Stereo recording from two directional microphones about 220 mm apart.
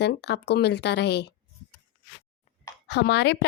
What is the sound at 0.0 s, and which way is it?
Speech, 50° left (ahead or behind).